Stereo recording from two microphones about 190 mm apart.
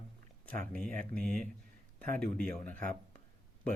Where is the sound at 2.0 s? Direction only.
50° right (ahead or behind).